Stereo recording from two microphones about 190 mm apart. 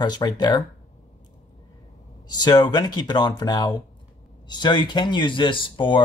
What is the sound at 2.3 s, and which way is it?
Speech, 20° left (ahead or behind).